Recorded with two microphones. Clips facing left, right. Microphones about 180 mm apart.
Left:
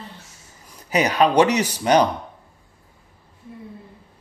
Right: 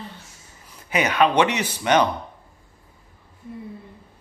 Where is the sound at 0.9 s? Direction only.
35° left (ahead or behind).